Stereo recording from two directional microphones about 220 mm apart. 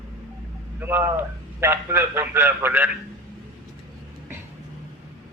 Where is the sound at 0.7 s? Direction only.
10° right (ahead or behind).